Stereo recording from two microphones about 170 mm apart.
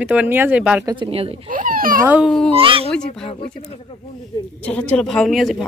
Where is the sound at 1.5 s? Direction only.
55° right (ahead or behind).